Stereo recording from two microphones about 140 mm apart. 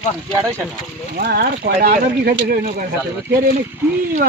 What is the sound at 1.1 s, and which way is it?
Speech, 90° right.